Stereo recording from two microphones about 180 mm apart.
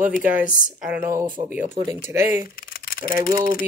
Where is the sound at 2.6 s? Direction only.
55° left (ahead or behind).